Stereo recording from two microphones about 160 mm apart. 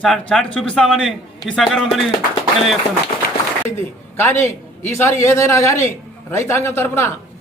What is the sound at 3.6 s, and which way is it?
A man's voice, 15° left (ahead or behind).